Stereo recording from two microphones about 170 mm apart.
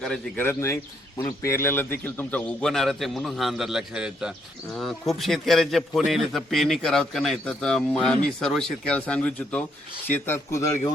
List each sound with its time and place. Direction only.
0.0 s a man's voice: 5° left (ahead or behind)